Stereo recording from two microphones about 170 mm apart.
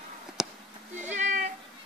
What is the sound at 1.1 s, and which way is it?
Cat, 45° right (ahead or behind).